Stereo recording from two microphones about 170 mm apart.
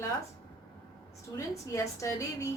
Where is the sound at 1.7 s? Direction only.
20° left (ahead or behind).